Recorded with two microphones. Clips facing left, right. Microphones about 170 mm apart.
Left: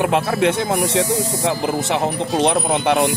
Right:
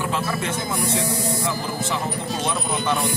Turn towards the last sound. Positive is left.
turn(degrees=70)  # may be behind; listen again after turning